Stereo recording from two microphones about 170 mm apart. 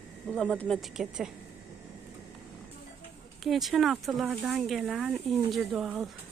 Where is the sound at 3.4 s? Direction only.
Centre (ahead or behind).